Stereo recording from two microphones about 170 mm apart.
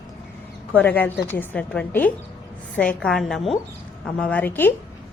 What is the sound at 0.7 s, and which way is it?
A woman's voice, 10° left (ahead or behind).